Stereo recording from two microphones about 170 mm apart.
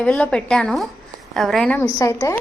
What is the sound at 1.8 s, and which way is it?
Speech, 25° left (ahead or behind).